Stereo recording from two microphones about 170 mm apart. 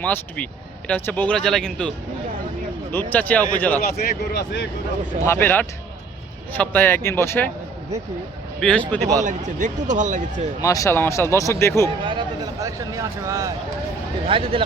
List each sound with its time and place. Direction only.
0.0 s speech: 10° left (ahead or behind)
3.1 s speech: 10° left (ahead or behind)
3.8 s speech: 65° left (ahead or behind)
5.2 s speech: 15° left (ahead or behind)
8.6 s speech: 5° left (ahead or behind)
9.2 s speech: 45° right (ahead or behind)
10.6 s speech: 20° left (ahead or behind)
11.9 s a man's voice: 30° right (ahead or behind)
14.3 s speech: 30° right (ahead or behind)